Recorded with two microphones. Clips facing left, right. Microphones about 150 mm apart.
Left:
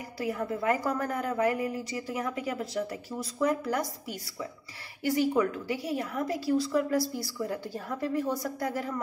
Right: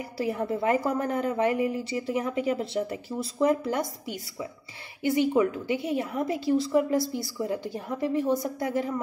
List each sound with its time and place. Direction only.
0.2 s a woman's voice: 30° right (ahead or behind)
5.0 s a woman's voice: 20° right (ahead or behind)